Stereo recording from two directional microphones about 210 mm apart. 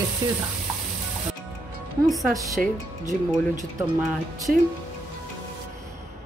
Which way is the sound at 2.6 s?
Centre (ahead or behind).